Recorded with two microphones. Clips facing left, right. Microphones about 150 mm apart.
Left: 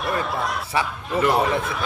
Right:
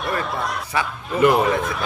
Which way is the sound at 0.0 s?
Centre (ahead or behind).